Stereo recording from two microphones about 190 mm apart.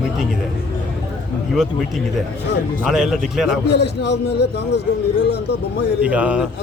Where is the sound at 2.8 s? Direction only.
5° right (ahead or behind).